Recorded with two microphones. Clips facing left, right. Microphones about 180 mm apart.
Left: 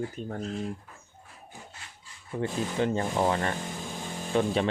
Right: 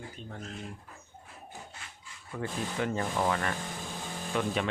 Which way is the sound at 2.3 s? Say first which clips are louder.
Left 5 dB; 20° left (ahead or behind).